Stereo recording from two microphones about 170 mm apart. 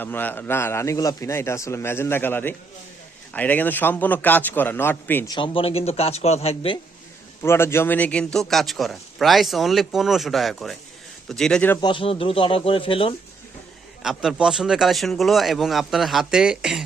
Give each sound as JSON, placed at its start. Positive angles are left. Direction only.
{"t": 0.0, "sound": "a man's voice", "side_deg": 10}
{"t": 5.3, "sound": "a man's voice", "side_deg": 30}
{"t": 7.4, "sound": "speech", "side_deg": 15}
{"t": 11.8, "sound": "a man's voice", "side_deg": 30}
{"t": 14.0, "sound": "speech", "side_deg": -5}